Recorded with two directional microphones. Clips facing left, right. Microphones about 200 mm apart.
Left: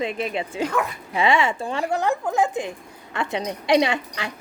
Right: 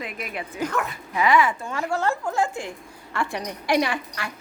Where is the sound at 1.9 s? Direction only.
20° left (ahead or behind).